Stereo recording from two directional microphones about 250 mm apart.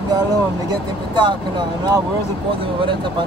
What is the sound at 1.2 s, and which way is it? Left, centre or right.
Speech, centre.